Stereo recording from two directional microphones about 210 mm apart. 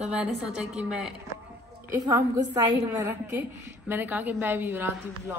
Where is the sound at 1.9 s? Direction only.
15° right (ahead or behind).